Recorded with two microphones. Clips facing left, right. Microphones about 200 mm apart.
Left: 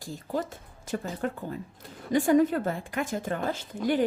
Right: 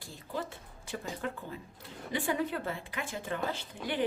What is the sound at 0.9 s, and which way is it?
A woman's voice, 45° left (ahead or behind).